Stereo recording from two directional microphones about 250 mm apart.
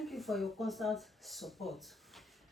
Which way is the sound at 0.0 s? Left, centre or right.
Centre.